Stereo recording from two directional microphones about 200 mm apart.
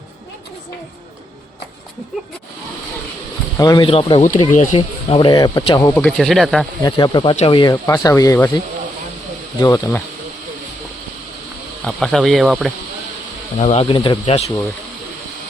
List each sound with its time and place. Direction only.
3.6 s speech: 20° left (ahead or behind)
4.2 s speech: 40° left (ahead or behind)
5.0 s speech: 25° left (ahead or behind)
5.9 s speech: 5° left (ahead or behind)
6.8 s speech: 20° left (ahead or behind)
11.9 s speech: centre (ahead or behind)
13.6 s speech: 30° left (ahead or behind)